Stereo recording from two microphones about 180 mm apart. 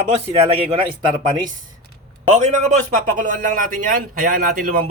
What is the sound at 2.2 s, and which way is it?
A man's voice, 40° right (ahead or behind).